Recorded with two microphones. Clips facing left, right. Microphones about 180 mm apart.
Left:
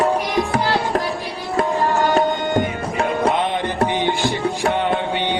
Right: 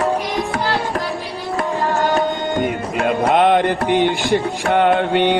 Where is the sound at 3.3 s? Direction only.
60° right (ahead or behind).